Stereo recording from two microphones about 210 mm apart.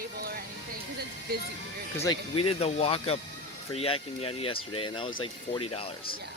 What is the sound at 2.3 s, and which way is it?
Speech, 25° left (ahead or behind).